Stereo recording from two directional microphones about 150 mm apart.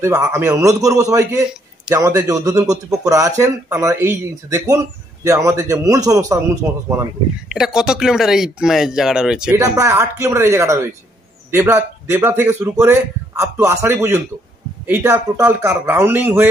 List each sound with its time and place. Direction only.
0.2 s a man's voice: 15° right (ahead or behind)
7.4 s speech: 5° right (ahead or behind)
9.5 s a man's voice: 20° right (ahead or behind)